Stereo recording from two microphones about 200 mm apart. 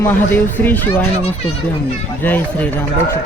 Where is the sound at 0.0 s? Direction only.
10° left (ahead or behind).